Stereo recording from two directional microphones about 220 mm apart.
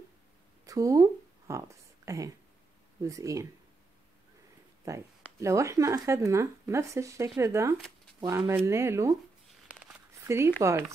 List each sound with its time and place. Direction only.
0.7 s speech: 15° right (ahead or behind)
4.8 s speech: 15° right (ahead or behind)
9.7 s a sound: 5° right (ahead or behind)